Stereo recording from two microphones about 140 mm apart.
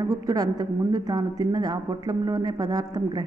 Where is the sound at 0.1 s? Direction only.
25° right (ahead or behind).